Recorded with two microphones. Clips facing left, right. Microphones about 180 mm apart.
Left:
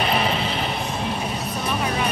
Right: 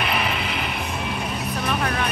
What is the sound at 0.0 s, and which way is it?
Vehicle, 30° left (ahead or behind).